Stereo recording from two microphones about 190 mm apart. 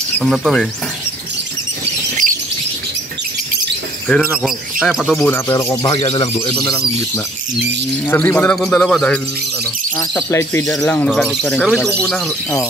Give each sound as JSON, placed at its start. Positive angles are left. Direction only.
{"t": 0.2, "sound": "speech", "side_deg": 0}
{"t": 4.1, "sound": "speech", "side_deg": 0}
{"t": 5.2, "sound": "a man's voice", "side_deg": 15}
{"t": 5.9, "sound": "speech", "side_deg": 30}
{"t": 8.1, "sound": "a man's voice", "side_deg": 10}
{"t": 9.9, "sound": "a man's voice", "side_deg": 15}